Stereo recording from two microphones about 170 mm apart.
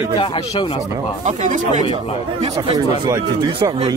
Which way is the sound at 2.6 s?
35° right (ahead or behind).